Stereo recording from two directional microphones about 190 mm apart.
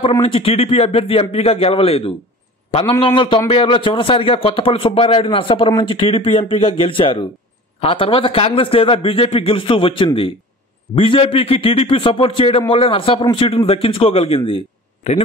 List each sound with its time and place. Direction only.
0.2 s a man's voice: 30° left (ahead or behind)